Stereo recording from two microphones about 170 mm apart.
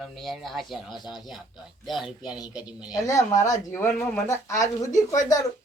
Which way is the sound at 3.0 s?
20° left (ahead or behind).